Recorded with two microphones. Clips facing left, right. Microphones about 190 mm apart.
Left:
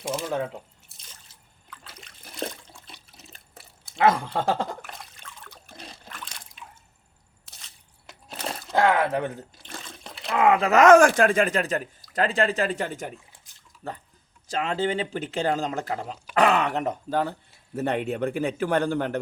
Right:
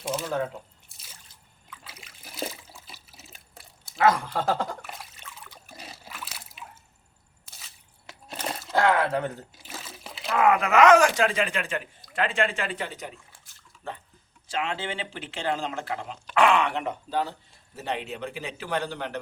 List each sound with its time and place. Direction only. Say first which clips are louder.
0.9 s drip: even; 5° right (ahead or behind)
1.7 s water: left 1 dB; 5° right (ahead or behind)
3.9 s speech: left 1 dB; 25° left (ahead or behind)
4.8 s trickle: even; 5° right (ahead or behind)
7.4 s a sound: right 1 dB; centre (ahead or behind)
8.7 s a sound: left 1 dB; 15° left (ahead or behind)
9.6 s water: right 3 dB; 5° right (ahead or behind)
10.2 s speech: left 2 dB; 25° left (ahead or behind)
10.7 s speech: left 4 dB; 45° left (ahead or behind)
14.4 s speech: left 5 dB; 40° left (ahead or behind)